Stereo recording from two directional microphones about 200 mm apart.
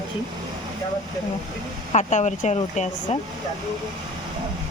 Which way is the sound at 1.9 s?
35° left (ahead or behind).